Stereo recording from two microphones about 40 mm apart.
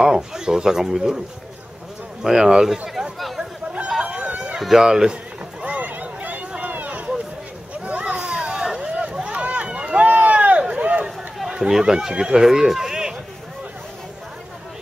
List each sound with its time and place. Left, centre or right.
0.0 s speech: centre
2.2 s speech: centre
4.0 s run: right
4.6 s speech: centre
5.8 s a sound: right
6.7 s run: right
7.8 s a sound: right
9.3 s run: right
11.5 s speech: centre